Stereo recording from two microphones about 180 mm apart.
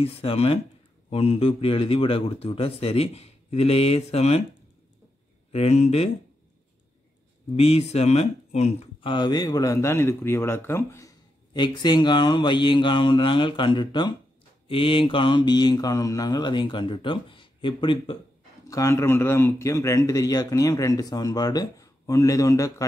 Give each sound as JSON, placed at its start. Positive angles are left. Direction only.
{"t": 0.0, "sound": "a man's voice", "side_deg": 30}
{"t": 5.5, "sound": "a man's voice", "side_deg": 35}
{"t": 7.5, "sound": "speech", "side_deg": 35}
{"t": 18.7, "sound": "speech", "side_deg": 15}